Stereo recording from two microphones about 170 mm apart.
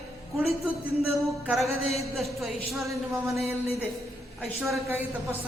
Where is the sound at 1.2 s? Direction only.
Centre (ahead or behind).